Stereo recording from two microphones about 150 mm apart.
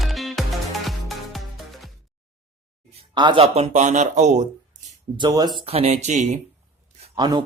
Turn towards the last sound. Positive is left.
turn(degrees=-30)  # may be behind; listen again after turning